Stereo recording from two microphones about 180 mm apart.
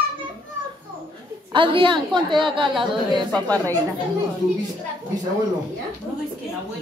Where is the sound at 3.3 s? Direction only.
10° left (ahead or behind).